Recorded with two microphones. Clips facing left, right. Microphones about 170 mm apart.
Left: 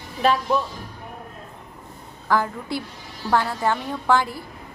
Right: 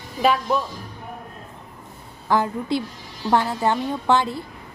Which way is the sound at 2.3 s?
20° right (ahead or behind).